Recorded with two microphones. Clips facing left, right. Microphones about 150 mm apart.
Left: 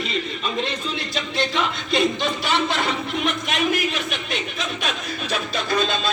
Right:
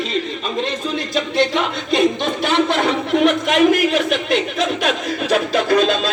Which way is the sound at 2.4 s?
50° right (ahead or behind).